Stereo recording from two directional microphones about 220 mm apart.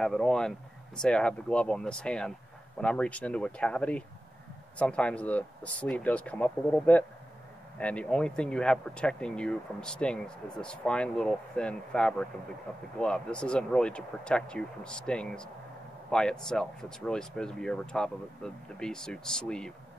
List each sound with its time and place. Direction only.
0.0 s speech: centre (ahead or behind)